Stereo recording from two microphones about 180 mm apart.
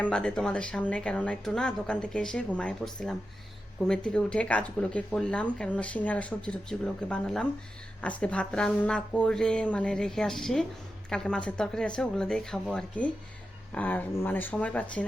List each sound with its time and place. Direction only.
0.0 s speech: 5° left (ahead or behind)